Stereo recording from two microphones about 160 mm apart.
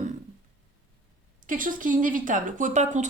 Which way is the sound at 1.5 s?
55° right (ahead or behind).